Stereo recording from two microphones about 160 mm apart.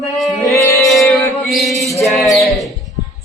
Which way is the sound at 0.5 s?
20° left (ahead or behind).